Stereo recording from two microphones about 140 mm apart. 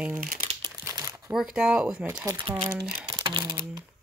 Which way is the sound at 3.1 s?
25° right (ahead or behind).